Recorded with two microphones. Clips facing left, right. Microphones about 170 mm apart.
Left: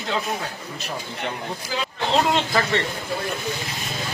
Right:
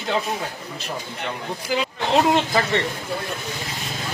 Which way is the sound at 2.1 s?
15° right (ahead or behind).